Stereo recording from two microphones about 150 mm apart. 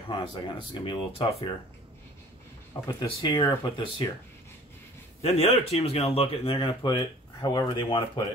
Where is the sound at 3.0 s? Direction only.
30° left (ahead or behind).